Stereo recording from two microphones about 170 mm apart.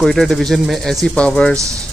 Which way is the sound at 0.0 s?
Centre (ahead or behind).